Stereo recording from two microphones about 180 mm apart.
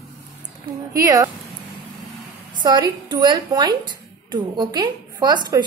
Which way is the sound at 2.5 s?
25° right (ahead or behind).